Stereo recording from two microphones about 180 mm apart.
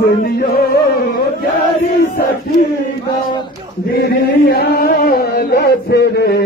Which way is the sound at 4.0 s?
65° left (ahead or behind).